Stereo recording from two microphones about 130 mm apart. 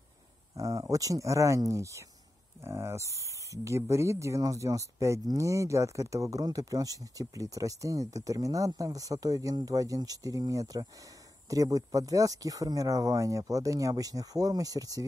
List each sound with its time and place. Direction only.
0.6 s speech: 25° right (ahead or behind)